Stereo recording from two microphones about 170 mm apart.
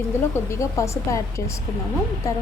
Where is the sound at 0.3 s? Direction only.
15° left (ahead or behind).